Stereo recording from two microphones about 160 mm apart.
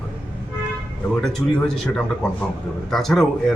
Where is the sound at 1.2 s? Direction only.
5° left (ahead or behind).